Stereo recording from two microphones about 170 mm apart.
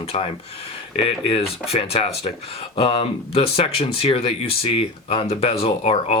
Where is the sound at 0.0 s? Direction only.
35° left (ahead or behind).